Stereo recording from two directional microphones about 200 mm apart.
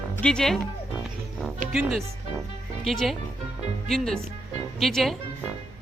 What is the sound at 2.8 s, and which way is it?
Speech, centre (ahead or behind).